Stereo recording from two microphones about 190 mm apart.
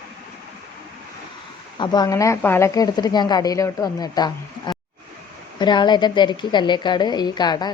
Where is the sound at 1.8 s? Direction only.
20° left (ahead or behind).